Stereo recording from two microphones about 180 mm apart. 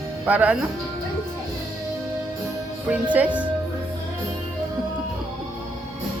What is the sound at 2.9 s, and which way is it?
Speech, 10° right (ahead or behind).